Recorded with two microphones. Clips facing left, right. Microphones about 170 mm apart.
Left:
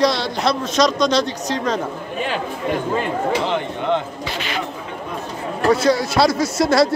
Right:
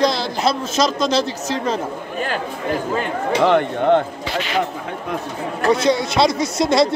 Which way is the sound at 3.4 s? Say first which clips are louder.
Right 6 dB; 55° right (ahead or behind).